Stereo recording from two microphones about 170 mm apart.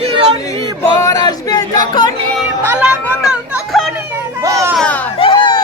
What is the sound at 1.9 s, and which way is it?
Music, 25° left (ahead or behind).